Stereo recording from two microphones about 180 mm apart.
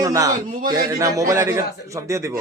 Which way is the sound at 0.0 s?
20° right (ahead or behind).